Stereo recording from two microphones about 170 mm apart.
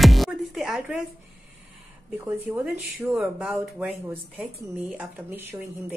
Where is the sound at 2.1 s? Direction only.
15° right (ahead or behind).